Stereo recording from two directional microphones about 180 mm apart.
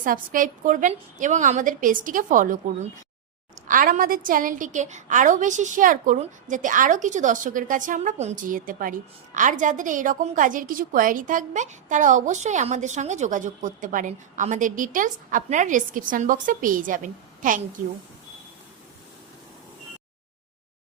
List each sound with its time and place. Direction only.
0.0 s a woman's voice: 50° right (ahead or behind)
3.7 s a woman's voice: 50° right (ahead or behind)